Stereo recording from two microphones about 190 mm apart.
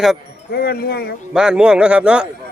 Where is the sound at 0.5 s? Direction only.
55° left (ahead or behind).